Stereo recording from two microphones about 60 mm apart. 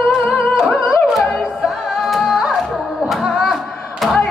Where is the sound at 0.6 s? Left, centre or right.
Centre.